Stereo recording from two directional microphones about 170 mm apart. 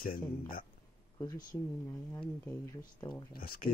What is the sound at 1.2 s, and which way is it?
Speech, 20° left (ahead or behind).